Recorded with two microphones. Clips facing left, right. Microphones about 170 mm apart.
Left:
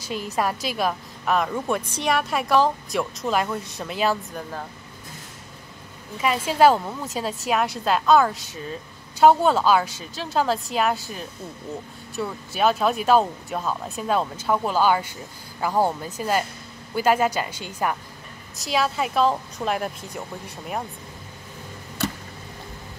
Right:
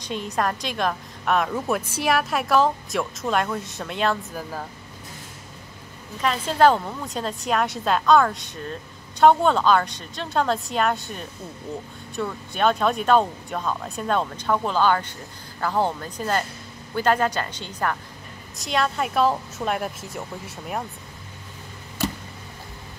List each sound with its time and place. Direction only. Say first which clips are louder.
0.0 s a woman's voice: even; 5° left (ahead or behind)
6.2 s a woman's voice: left 1 dB; 10° left (ahead or behind)